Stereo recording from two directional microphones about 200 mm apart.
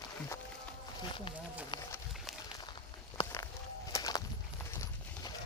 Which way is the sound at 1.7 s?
15° left (ahead or behind).